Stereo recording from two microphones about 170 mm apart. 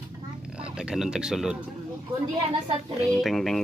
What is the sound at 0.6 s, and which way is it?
Speech, 5° right (ahead or behind).